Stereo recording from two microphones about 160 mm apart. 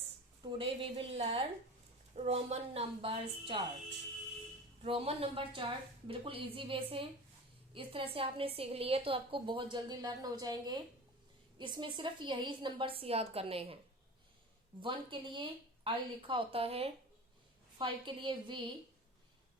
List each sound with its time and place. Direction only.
0.4 s a woman's voice: 35° right (ahead or behind)
4.8 s a woman's voice: 40° right (ahead or behind)
14.8 s a woman's voice: 30° right (ahead or behind)